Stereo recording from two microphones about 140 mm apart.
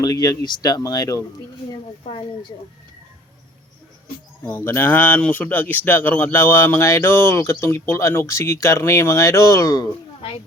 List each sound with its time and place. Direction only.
0.0 s speech: 25° left (ahead or behind)
4.4 s a man's voice: 15° left (ahead or behind)